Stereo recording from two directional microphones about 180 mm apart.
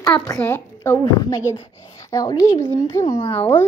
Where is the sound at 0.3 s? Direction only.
15° left (ahead or behind).